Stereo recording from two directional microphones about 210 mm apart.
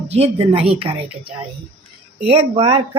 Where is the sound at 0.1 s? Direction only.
30° right (ahead or behind).